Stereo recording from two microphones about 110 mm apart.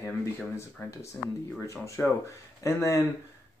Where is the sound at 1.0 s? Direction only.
25° left (ahead or behind).